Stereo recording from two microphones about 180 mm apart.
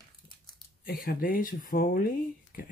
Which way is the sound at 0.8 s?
50° left (ahead or behind).